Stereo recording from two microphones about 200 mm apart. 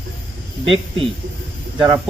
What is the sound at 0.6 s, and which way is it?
Speech, 25° right (ahead or behind).